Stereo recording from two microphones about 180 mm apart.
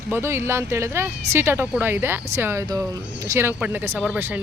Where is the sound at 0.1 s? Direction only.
15° right (ahead or behind).